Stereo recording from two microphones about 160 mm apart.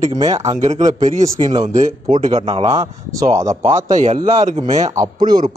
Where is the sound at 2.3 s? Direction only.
35° right (ahead or behind).